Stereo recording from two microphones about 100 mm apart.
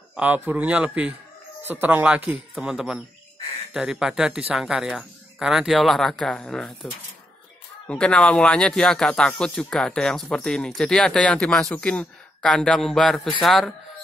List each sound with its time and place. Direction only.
0.1 s a man's voice: 15° right (ahead or behind); by 6.9 s 5° left (ahead or behind)
7.9 s speech: 10° left (ahead or behind)